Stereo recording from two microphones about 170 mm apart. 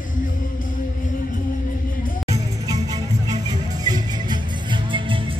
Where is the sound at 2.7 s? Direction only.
25° right (ahead or behind).